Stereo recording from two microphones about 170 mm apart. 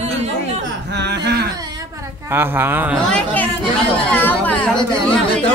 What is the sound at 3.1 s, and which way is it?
Speech, 10° left (ahead or behind).